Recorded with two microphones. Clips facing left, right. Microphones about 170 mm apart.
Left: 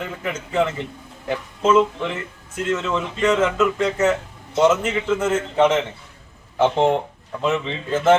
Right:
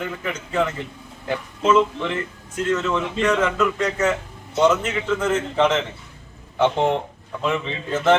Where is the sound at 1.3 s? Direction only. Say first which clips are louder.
Left 1 dB; 5° left (ahead or behind).